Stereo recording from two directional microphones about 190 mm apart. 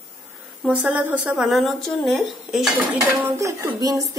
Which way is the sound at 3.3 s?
15° right (ahead or behind).